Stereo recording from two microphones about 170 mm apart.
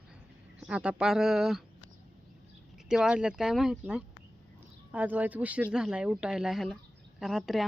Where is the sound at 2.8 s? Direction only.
5° right (ahead or behind).